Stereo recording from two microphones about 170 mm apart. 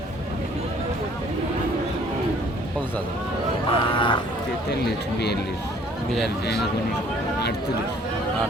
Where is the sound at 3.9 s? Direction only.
30° left (ahead or behind).